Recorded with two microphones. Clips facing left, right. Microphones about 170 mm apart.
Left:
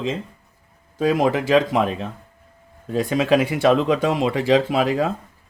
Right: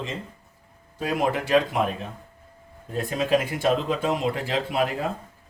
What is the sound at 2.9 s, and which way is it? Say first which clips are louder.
Speech: left 5 dB; 90° left.